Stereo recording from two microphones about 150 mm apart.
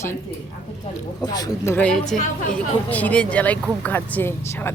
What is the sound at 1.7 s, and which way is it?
Speech, 5° left (ahead or behind).